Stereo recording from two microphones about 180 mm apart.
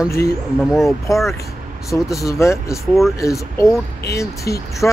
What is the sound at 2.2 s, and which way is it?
Speech, 15° left (ahead or behind).